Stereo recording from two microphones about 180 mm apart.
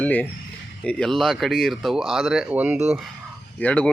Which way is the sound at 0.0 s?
10° left (ahead or behind).